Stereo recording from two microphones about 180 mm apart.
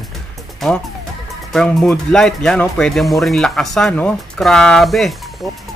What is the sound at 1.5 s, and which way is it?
Speech, 5° left (ahead or behind).